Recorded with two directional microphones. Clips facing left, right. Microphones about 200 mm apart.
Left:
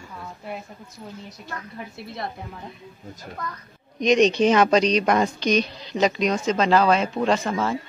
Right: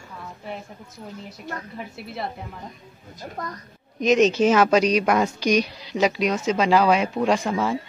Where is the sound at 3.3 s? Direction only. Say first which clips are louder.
Right 1 dB; 40° right (ahead or behind).